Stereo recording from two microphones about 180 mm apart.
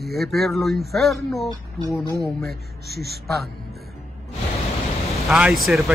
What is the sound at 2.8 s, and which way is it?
Speech, 60° right (ahead or behind).